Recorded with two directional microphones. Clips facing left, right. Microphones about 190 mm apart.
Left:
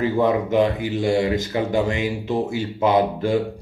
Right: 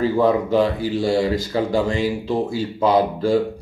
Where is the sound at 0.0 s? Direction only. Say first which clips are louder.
Right 2 dB; 20° left (ahead or behind).